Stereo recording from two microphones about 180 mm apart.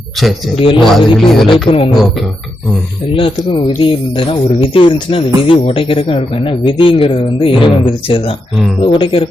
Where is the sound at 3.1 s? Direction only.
30° left (ahead or behind).